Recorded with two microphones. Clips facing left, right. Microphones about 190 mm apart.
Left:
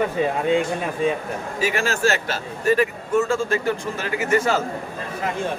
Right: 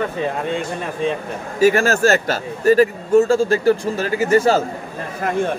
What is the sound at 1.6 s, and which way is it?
Speech, 45° right (ahead or behind).